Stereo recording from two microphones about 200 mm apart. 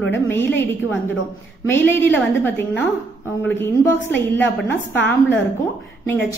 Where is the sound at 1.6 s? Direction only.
10° left (ahead or behind).